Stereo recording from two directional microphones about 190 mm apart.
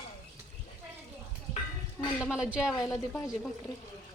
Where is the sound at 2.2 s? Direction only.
5° right (ahead or behind).